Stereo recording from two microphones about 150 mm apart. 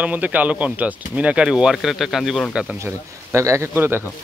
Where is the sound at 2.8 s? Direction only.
20° right (ahead or behind).